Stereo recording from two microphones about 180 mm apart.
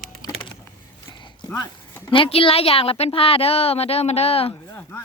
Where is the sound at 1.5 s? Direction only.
15° left (ahead or behind).